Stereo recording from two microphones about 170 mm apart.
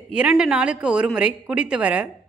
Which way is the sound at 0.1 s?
5° right (ahead or behind).